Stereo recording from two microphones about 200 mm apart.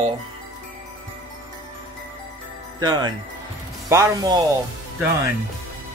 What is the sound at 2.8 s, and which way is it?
Speech, 20° right (ahead or behind).